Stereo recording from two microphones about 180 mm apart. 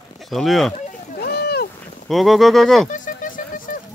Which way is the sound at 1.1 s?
60° left (ahead or behind).